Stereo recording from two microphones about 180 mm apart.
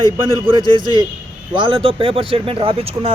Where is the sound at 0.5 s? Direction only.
20° left (ahead or behind).